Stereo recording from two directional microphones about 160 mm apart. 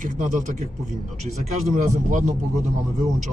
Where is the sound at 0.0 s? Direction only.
50° right (ahead or behind).